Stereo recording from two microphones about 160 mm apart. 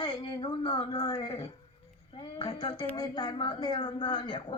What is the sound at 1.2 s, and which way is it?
Speech, 40° left (ahead or behind).